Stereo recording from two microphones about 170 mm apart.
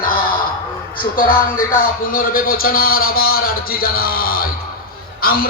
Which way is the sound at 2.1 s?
55° left (ahead or behind).